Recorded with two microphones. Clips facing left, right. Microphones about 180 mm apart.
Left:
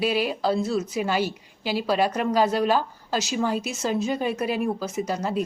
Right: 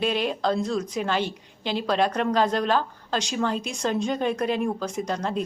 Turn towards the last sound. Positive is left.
turn(degrees=5)  # may be behind; listen again after turning